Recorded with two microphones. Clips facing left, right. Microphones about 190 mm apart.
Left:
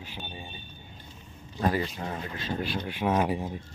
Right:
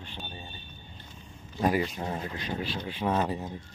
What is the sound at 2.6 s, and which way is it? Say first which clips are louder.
Speech: left 2 dB; 55° left (ahead or behind).